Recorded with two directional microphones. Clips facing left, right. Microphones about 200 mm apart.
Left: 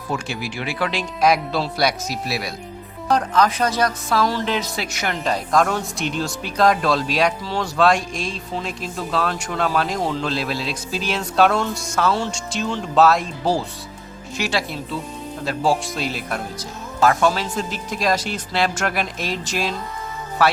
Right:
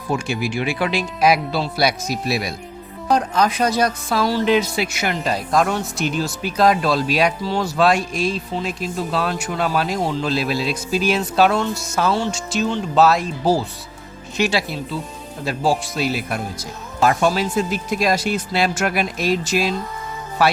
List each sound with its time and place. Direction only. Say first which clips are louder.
0.1 s speech: right 5 dB; 15° right (ahead or behind)
2.2 s speech: right 5 dB; 20° right (ahead or behind); by 13.6 s 5° right (ahead or behind)
14.4 s speech: right 6 dB; 20° right (ahead or behind)
15.4 s speech: even; 5° right (ahead or behind)